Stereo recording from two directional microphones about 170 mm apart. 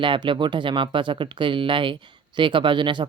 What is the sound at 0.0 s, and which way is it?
Speech, 30° right (ahead or behind).